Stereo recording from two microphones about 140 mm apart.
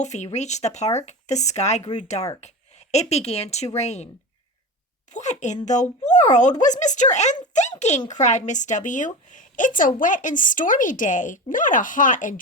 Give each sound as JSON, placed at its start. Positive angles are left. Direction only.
{"t": 0.0, "sound": "speech", "side_deg": 55}
{"t": 5.1, "sound": "a woman's voice", "side_deg": 55}